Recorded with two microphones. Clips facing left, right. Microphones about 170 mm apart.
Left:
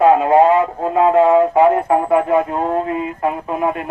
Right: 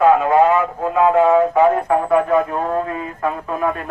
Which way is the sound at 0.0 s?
25° left (ahead or behind).